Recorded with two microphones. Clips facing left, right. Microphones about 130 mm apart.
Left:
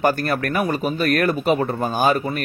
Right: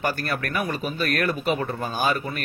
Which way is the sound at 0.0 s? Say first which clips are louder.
Left 7 dB; 45° left (ahead or behind).